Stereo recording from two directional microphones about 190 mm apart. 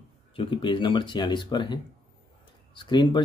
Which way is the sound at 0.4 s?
25° left (ahead or behind).